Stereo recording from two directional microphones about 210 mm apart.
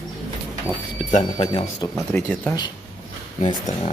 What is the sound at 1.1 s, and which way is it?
Speech, 25° left (ahead or behind).